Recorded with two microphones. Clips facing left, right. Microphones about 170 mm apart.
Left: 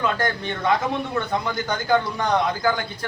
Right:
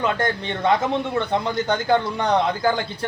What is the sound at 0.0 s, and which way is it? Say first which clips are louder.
A man's voice: right 1 dB; 25° right (ahead or behind).